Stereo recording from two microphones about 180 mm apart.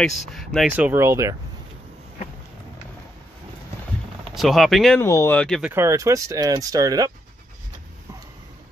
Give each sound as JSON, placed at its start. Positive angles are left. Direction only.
{"t": 0.0, "sound": "speech", "side_deg": 0}
{"t": 0.7, "sound": "speech", "side_deg": -10}
{"t": 4.3, "sound": "speech", "side_deg": 0}
{"t": 5.0, "sound": "speech", "side_deg": 15}
{"t": 5.6, "sound": "speech", "side_deg": -15}